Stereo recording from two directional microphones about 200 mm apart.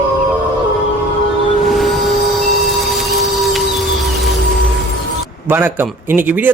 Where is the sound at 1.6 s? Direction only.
Centre (ahead or behind).